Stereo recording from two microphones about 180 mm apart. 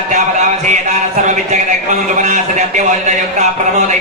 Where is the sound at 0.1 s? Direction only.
40° right (ahead or behind).